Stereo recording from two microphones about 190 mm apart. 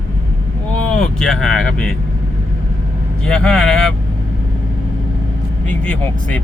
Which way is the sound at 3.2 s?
5° left (ahead or behind).